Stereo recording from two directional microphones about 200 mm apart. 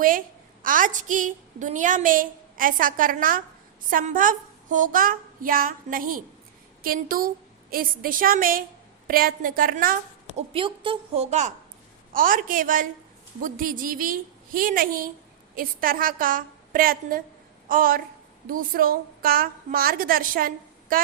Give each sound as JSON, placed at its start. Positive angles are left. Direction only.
{"t": 0.6, "sound": "a woman's voice", "side_deg": -40}